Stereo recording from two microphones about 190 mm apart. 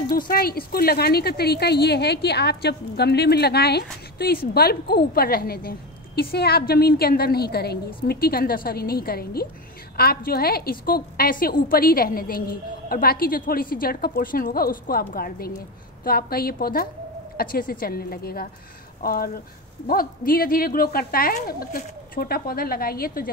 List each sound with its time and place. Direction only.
0.1 s a woman's voice: 50° left (ahead or behind)